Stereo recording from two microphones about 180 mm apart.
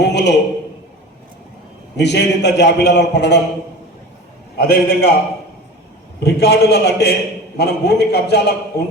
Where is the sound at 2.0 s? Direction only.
70° left (ahead or behind).